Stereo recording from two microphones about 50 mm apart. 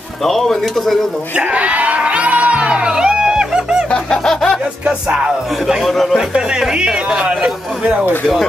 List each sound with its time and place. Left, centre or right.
0.2 s speech: centre
1.3 s music: right
4.1 s a sound: centre
5.1 s speech: centre
5.9 s speech: centre
6.7 s speech: centre